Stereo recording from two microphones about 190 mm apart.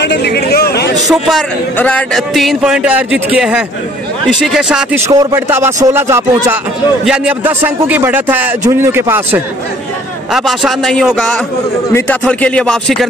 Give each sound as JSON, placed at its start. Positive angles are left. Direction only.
{"t": 0.0, "sound": "a sound", "side_deg": 60}
{"t": 1.1, "sound": "speech", "side_deg": 0}
{"t": 5.0, "sound": "a man's voice", "side_deg": -15}
{"t": 10.3, "sound": "a man's voice", "side_deg": 0}